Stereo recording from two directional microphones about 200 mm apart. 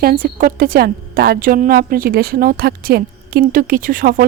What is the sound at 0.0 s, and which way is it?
A woman's voice, 45° right (ahead or behind).